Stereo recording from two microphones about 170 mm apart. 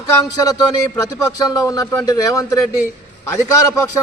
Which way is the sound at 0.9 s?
15° left (ahead or behind).